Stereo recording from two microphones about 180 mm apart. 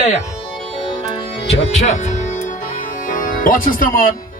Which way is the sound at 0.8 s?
35° left (ahead or behind).